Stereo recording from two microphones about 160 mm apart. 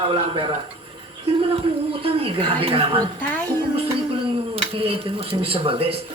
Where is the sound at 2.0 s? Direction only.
35° right (ahead or behind).